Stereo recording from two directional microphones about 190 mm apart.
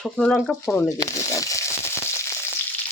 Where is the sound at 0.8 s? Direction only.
15° left (ahead or behind).